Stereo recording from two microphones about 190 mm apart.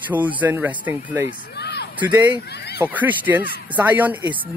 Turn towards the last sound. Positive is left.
turn(degrees=-10)  # may be behind; listen again after turning